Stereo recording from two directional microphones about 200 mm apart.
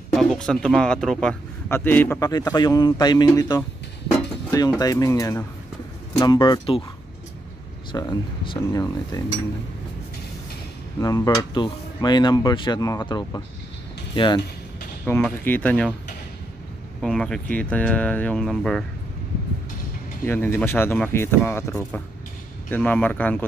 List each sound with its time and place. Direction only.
0.1 s a man's voice: centre (ahead or behind); by 6.8 s 25° left (ahead or behind)
7.9 s a man's voice: 20° left (ahead or behind)
11.0 s a man's voice: 15° left (ahead or behind)
15.0 s a man's voice: 10° left (ahead or behind)
17.0 s speech: 5° left (ahead or behind)
20.2 s a man's voice: 10° left (ahead or behind)